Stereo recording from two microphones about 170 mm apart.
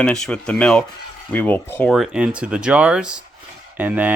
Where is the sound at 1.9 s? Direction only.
5° right (ahead or behind).